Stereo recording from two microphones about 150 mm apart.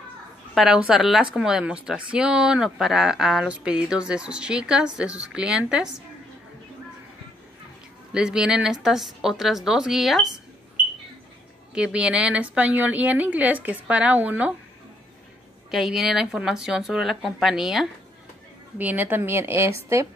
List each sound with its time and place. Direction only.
0.6 s speech: 5° right (ahead or behind)
8.1 s speech: 5° right (ahead or behind)
11.7 s a woman's voice: 5° right (ahead or behind)
15.7 s a woman's voice: centre (ahead or behind)